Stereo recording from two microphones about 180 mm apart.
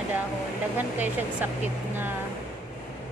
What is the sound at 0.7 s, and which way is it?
Speech, 10° right (ahead or behind).